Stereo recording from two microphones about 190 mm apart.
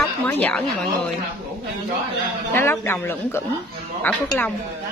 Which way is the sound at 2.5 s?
10° left (ahead or behind).